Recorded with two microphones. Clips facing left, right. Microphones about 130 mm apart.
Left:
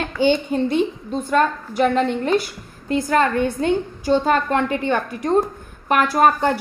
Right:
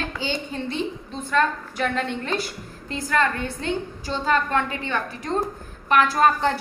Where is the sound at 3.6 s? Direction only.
50° left (ahead or behind).